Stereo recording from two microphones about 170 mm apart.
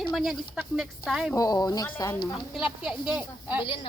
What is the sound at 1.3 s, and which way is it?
Speech, 20° left (ahead or behind).